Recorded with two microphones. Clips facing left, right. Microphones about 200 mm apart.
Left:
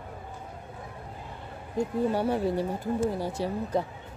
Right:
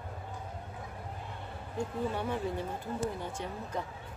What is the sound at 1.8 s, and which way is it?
Speech, 40° left (ahead or behind).